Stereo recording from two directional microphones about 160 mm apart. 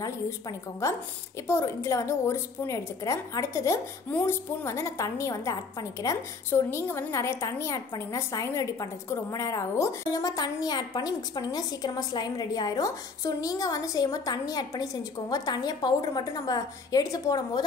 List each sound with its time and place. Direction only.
0.0 s a woman's voice: 20° left (ahead or behind)